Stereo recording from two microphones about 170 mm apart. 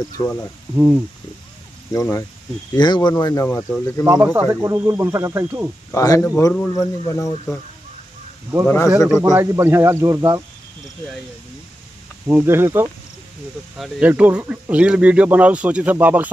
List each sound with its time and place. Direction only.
0.2 s speech: 15° left (ahead or behind)
0.7 s speech: 15° right (ahead or behind)
1.9 s speech: 15° left (ahead or behind)
3.4 s speech: 10° left (ahead or behind)
4.0 s speech: 15° right (ahead or behind)
5.9 s speech: 20° left (ahead or behind)
8.6 s speech: 15° left (ahead or behind)
9.3 s speech: 15° right (ahead or behind)
12.3 s speech: 15° right (ahead or behind)